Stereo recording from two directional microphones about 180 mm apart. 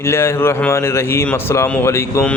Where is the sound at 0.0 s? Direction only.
15° left (ahead or behind).